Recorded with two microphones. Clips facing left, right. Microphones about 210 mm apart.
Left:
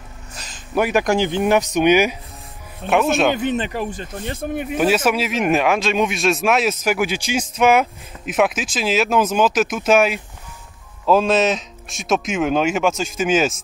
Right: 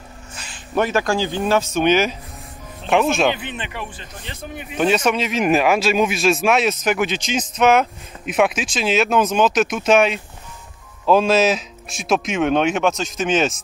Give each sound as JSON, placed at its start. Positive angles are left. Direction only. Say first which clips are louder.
{"t": 0.7, "sound": "speech", "louder": "left 2 dB", "side_deg": 15}
{"t": 2.9, "sound": "speech", "louder": "even", "side_deg": 0}
{"t": 3.3, "sound": "speech", "louder": "left 9 dB", "side_deg": 40}
{"t": 4.7, "sound": "speech", "louder": "even", "side_deg": 5}